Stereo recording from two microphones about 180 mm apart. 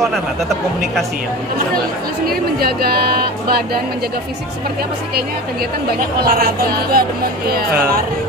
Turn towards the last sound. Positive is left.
turn(degrees=-55)  # may be behind; listen again after turning